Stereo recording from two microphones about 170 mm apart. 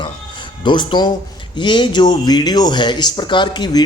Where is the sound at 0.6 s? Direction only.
25° left (ahead or behind).